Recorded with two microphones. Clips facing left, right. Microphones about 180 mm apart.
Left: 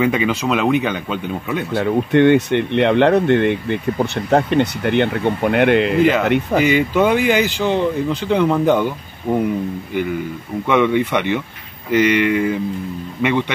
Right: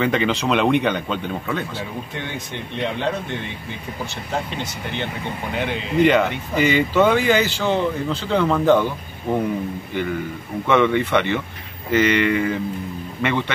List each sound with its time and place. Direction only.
0.0 s speech: 5° left (ahead or behind)
1.8 s speech: 65° left (ahead or behind)
6.6 s speech: 10° left (ahead or behind)
10.7 s speech: 10° left (ahead or behind)